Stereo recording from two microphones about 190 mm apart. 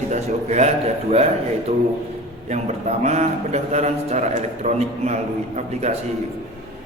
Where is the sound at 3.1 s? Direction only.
35° right (ahead or behind).